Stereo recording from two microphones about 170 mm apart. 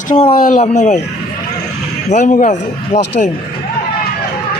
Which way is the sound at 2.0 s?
45° left (ahead or behind).